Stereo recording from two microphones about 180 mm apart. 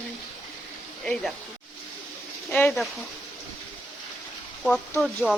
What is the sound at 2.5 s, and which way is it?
Speech, 10° left (ahead or behind).